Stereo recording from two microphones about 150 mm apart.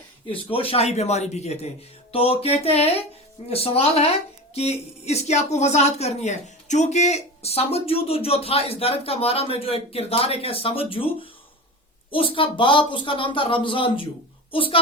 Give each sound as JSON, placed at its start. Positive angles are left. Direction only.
{"t": 0.3, "sound": "speech", "side_deg": 40}